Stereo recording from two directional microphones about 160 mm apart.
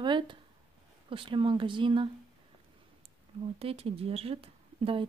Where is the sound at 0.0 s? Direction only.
30° right (ahead or behind).